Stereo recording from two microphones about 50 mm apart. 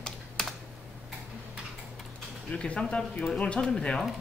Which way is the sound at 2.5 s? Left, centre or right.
Centre.